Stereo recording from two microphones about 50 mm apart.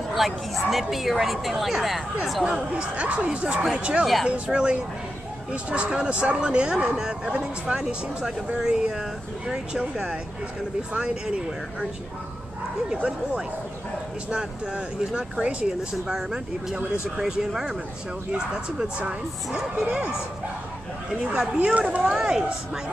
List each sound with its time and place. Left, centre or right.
0.1 s a woman's voice: centre
2.7 s speech: right
4.0 s a woman's voice: centre
4.3 s speech: centre
12.9 s speech: centre
18.8 s speech: right
22.1 s speech: centre